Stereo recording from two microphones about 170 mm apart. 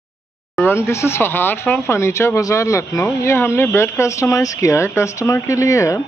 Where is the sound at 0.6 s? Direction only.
15° left (ahead or behind).